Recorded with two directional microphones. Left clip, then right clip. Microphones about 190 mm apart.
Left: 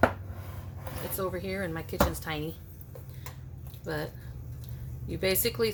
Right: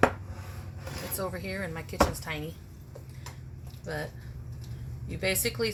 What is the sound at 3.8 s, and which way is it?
Speech, 40° left (ahead or behind).